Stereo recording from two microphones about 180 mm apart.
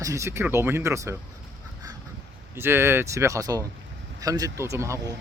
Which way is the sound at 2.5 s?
15° right (ahead or behind).